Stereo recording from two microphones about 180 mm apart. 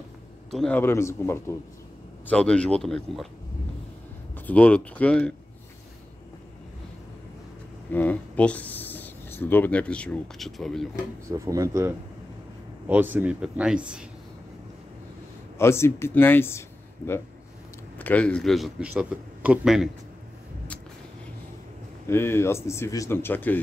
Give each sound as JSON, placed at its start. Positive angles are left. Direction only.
{"t": 0.5, "sound": "a man's voice", "side_deg": 0}
{"t": 0.7, "sound": "a man's voice", "side_deg": 15}
{"t": 4.5, "sound": "speech", "side_deg": 5}
{"t": 7.9, "sound": "speech", "side_deg": 10}
{"t": 11.2, "sound": "speech", "side_deg": -15}
{"t": 15.5, "sound": "a man's voice", "side_deg": 15}
{"t": 22.0, "sound": "speech", "side_deg": 15}